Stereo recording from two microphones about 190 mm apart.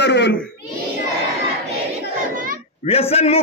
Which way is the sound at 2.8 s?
30° left (ahead or behind).